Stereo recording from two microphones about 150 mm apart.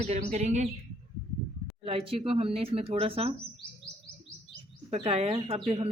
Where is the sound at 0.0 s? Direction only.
45° right (ahead or behind).